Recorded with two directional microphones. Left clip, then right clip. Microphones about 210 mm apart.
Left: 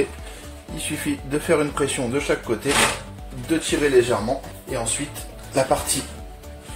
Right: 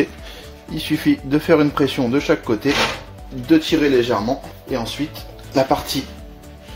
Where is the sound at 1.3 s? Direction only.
35° right (ahead or behind).